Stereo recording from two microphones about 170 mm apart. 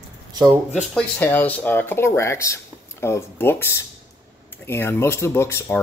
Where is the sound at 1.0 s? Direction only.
10° left (ahead or behind).